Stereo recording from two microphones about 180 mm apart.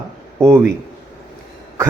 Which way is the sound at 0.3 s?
15° right (ahead or behind).